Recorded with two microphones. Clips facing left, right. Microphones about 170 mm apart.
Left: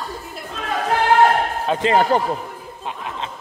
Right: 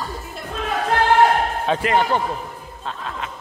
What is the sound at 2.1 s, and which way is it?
Mantra, 35° left (ahead or behind).